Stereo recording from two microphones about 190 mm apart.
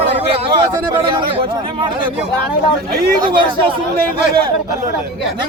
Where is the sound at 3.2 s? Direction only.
25° right (ahead or behind).